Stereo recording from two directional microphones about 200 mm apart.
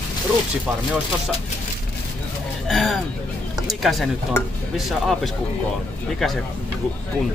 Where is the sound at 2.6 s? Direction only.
Centre (ahead or behind).